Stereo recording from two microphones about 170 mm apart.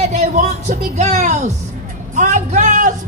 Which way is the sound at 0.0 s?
40° right (ahead or behind).